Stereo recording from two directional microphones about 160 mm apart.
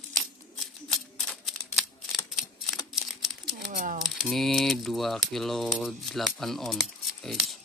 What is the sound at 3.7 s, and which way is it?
Speech, 55° right (ahead or behind).